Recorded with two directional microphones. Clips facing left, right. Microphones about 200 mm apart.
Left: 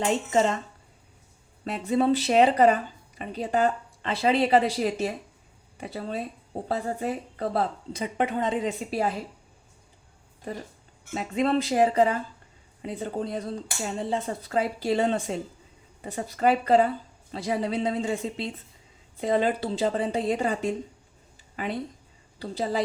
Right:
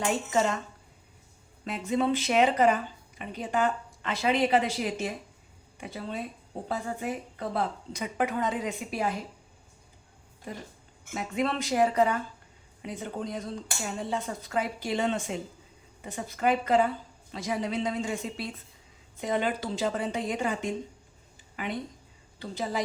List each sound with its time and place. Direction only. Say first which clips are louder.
0.0 s speech: left 3 dB; 25° left (ahead or behind)
1.6 s speech: left 4 dB; 35° left (ahead or behind)
11.1 s speech: left 5 dB; 30° left (ahead or behind)
21.5 s a sound: left 3 dB; 35° left (ahead or behind)
22.4 s speech: left 4 dB; 35° left (ahead or behind)